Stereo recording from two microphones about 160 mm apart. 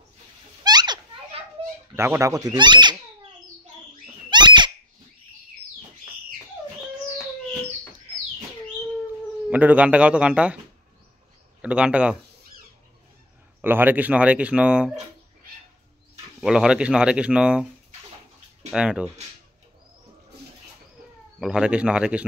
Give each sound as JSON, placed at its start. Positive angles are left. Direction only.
{"t": 0.7, "sound": "children playing", "side_deg": -25}
{"t": 2.0, "sound": "speech", "side_deg": -15}
{"t": 4.3, "sound": "a sound", "side_deg": -30}
{"t": 9.5, "sound": "speech", "side_deg": -10}
{"t": 11.6, "sound": "speech", "side_deg": -5}
{"t": 13.6, "sound": "speech", "side_deg": -10}
{"t": 16.3, "sound": "speech", "side_deg": -5}
{"t": 18.7, "sound": "speech", "side_deg": -5}
{"t": 21.4, "sound": "speech", "side_deg": -5}